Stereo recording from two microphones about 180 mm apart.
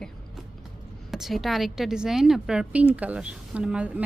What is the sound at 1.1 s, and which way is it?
Speech, centre (ahead or behind).